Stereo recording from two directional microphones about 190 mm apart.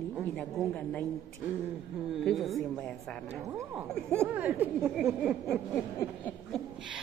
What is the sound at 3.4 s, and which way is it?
Speech, 15° right (ahead or behind).